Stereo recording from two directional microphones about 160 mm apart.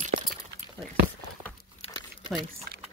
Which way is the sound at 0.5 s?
90° right.